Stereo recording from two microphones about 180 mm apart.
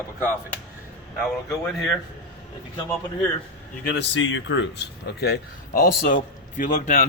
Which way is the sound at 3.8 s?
85° left.